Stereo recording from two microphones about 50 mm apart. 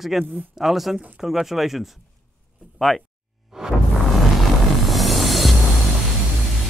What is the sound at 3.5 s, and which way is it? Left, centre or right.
Music, centre.